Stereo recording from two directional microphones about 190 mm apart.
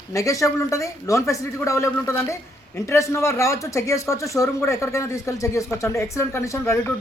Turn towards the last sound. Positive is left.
turn(degrees=15)  # may be behind; listen again after turning